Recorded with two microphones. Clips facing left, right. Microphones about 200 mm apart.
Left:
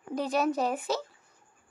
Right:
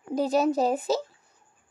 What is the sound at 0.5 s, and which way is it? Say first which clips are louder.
Speech: right 5 dB; 35° right (ahead or behind).